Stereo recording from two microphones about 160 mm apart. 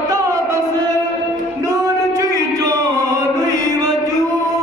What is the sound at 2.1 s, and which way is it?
Music, 20° right (ahead or behind).